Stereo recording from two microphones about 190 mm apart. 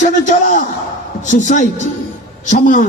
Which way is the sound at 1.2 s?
40° left (ahead or behind).